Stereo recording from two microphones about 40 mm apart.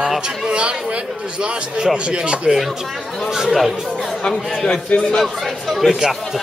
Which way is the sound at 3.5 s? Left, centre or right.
Centre.